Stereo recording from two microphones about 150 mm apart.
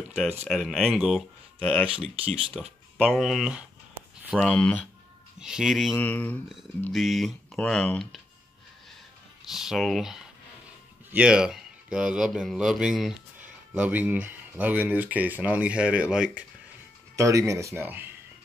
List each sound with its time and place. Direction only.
0.5 s speech: centre (ahead or behind)
1.6 s speech: 10° left (ahead or behind)
2.4 s speech: 5° right (ahead or behind)
4.4 s speech: 5° left (ahead or behind)
5.4 s speech: 5° right (ahead or behind)
5.9 s speech: 10° left (ahead or behind)
6.9 s speech: centre (ahead or behind)
9.5 s speech: 5° right (ahead or behind)
17.1 s speech: 20° right (ahead or behind)